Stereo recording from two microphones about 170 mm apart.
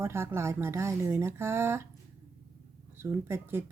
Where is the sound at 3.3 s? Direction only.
15° right (ahead or behind).